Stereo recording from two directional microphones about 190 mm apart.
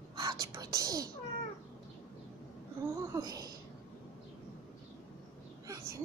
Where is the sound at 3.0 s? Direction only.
15° right (ahead or behind).